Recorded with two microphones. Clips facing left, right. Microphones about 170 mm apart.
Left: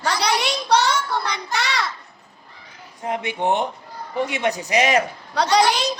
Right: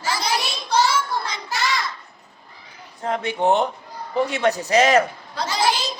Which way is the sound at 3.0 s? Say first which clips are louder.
Right 2 dB; 15° left (ahead or behind).